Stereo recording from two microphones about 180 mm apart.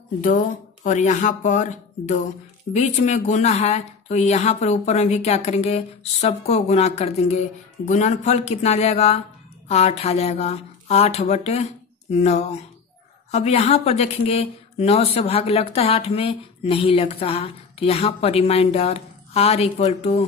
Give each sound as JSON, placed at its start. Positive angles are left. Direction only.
{"t": 0.8, "sound": "a woman's voice", "side_deg": 40}